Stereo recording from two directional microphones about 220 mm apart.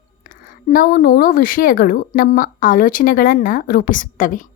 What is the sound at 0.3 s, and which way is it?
A woman's voice, 40° left (ahead or behind).